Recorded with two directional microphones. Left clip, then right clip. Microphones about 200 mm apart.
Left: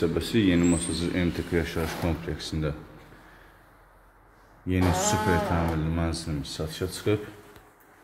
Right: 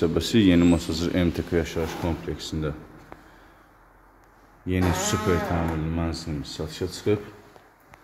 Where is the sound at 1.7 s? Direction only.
5° right (ahead or behind).